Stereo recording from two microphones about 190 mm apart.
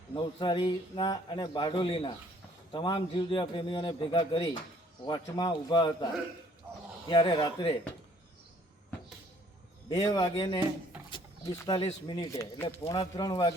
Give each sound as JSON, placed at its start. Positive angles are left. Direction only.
{"t": 0.2, "sound": "a man's voice", "side_deg": 25}
{"t": 6.7, "sound": "a sound", "side_deg": -10}
{"t": 7.1, "sound": "a man's voice", "side_deg": 25}
{"t": 9.9, "sound": "a man's voice", "side_deg": 20}
{"t": 11.1, "sound": "a sound", "side_deg": 20}
{"t": 11.8, "sound": "a man's voice", "side_deg": 25}